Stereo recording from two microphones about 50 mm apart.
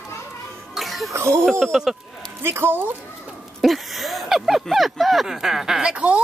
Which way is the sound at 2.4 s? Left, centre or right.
Right.